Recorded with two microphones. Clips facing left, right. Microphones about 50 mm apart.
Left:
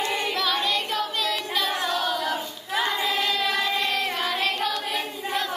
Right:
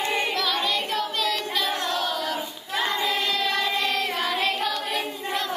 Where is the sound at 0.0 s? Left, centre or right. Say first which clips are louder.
Right 1 dB; right.